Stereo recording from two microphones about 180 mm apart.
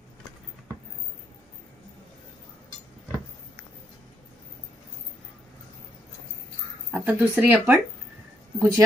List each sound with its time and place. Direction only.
6.9 s speech: 10° right (ahead or behind)